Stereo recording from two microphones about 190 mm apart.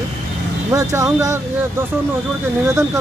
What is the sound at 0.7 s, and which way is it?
Speech, 15° right (ahead or behind).